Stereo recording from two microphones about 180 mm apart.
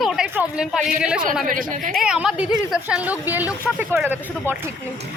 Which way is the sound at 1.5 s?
50° right (ahead or behind).